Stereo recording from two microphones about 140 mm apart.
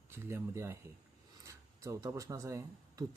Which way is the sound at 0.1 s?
20° right (ahead or behind).